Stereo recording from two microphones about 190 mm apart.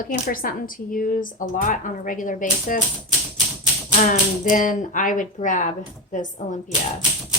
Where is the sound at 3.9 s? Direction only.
45° left (ahead or behind).